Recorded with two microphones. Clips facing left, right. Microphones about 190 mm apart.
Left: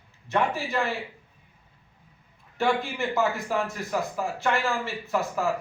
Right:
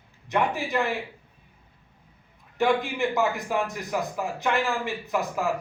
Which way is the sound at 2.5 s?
15° right (ahead or behind).